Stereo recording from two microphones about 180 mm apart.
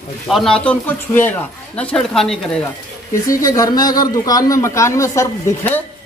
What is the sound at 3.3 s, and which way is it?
A man's voice, 20° left (ahead or behind).